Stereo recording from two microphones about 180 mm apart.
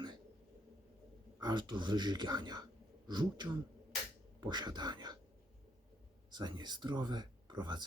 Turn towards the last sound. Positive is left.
turn(degrees=-25)  # may be behind; listen again after turning